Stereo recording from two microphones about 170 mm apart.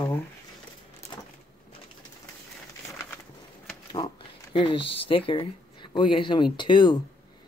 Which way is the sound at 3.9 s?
30° left (ahead or behind).